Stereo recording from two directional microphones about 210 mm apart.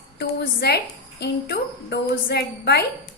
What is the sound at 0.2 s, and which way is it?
A woman's voice, 50° left (ahead or behind).